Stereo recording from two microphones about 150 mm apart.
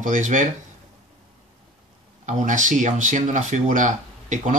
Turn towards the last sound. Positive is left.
turn(degrees=-55)  # may be behind; listen again after turning